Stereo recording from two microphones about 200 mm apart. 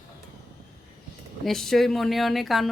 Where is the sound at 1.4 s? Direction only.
Centre (ahead or behind).